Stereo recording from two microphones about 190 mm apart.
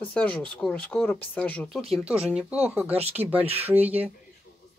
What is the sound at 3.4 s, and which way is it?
Speech, 30° right (ahead or behind).